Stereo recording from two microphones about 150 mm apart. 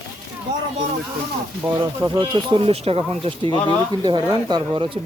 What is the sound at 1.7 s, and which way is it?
Speech, 25° right (ahead or behind).